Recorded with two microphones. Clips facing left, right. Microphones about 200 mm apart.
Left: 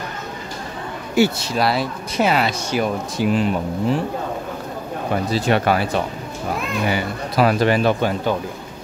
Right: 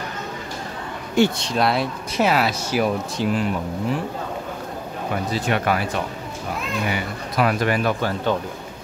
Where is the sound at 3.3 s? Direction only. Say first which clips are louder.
Left 4 dB; 20° left (ahead or behind).